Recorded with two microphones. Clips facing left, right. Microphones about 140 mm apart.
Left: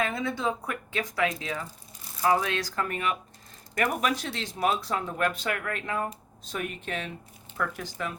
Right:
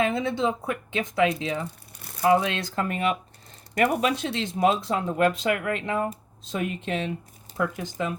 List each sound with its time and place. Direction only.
0.0 s speech: 25° right (ahead or behind)
1.6 s crumpling: 65° right (ahead or behind)
2.2 s speech: 25° right (ahead or behind)